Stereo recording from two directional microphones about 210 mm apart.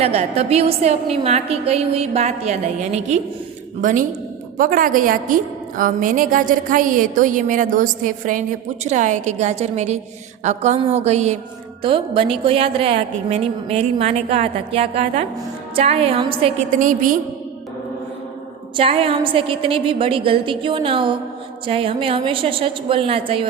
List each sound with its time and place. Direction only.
0.0 s a woman's voice: 30° right (ahead or behind)
16.7 s a woman's voice: 40° right (ahead or behind)
18.8 s a woman's voice: 25° right (ahead or behind)